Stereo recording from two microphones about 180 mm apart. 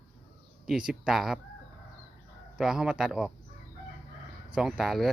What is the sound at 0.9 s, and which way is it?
Speech, centre (ahead or behind).